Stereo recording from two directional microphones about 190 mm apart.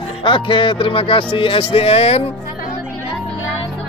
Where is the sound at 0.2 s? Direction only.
25° left (ahead or behind).